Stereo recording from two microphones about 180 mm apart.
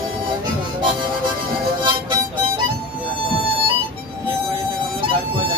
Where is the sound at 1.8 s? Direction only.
25° right (ahead or behind).